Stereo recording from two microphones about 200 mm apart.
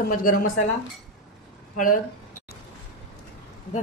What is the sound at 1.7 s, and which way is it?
Speech, 45° left (ahead or behind).